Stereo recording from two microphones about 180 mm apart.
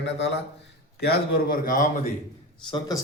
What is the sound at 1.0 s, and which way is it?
A man's voice, 60° left (ahead or behind).